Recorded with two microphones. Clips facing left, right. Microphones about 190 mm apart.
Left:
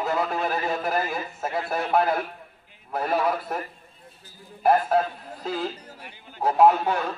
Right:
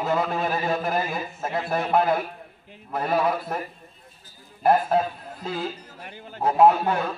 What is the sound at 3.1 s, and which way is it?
Speech, 10° right (ahead or behind).